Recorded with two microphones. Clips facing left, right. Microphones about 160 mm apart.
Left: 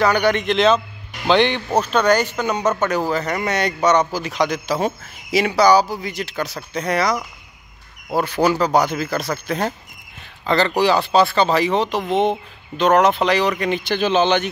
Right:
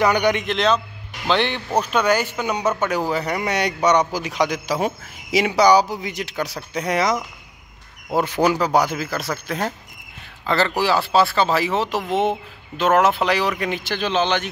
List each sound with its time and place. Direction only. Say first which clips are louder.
0.0 s a man's voice: left 1 dB; 15° right (ahead or behind)
0.5 s a man's voice: left 4 dB; centre (ahead or behind); by 7.2 s 15° right (ahead or behind)
8.2 s a man's voice: left 1 dB; 15° right (ahead or behind); by 14.5 s centre (ahead or behind)